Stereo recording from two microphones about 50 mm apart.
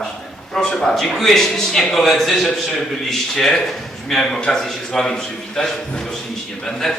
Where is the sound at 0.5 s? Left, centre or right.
Centre.